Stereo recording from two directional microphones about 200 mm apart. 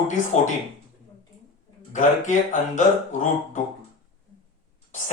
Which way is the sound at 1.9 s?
40° left (ahead or behind).